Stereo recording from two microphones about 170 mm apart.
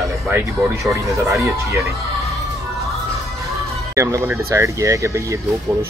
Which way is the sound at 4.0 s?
15° right (ahead or behind).